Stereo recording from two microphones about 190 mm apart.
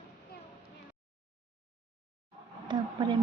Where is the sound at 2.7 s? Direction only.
25° right (ahead or behind).